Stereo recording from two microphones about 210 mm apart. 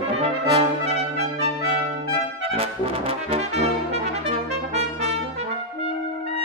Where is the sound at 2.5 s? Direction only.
30° right (ahead or behind).